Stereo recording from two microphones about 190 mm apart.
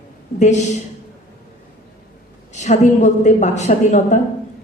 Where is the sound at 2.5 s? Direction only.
35° left (ahead or behind).